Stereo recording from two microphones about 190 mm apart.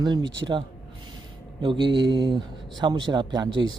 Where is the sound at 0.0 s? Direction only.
20° right (ahead or behind).